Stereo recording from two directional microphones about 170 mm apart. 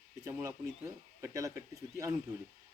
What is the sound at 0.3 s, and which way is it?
Speech, 15° right (ahead or behind).